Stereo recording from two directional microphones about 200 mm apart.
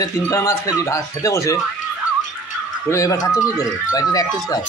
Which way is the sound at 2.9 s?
15° left (ahead or behind).